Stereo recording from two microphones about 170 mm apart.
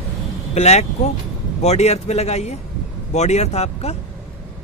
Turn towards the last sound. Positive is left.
turn(degrees=40)  # may be behind; listen again after turning